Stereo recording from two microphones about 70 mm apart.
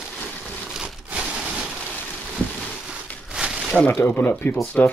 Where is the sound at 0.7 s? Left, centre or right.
Centre.